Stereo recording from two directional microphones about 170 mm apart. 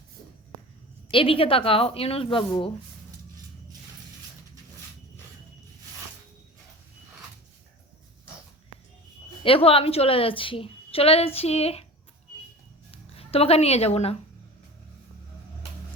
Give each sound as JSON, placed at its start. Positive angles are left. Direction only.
{"t": 1.1, "sound": "a woman's voice", "side_deg": 30}
{"t": 9.4, "sound": "a woman's voice", "side_deg": 30}
{"t": 12.9, "sound": "speech", "side_deg": 35}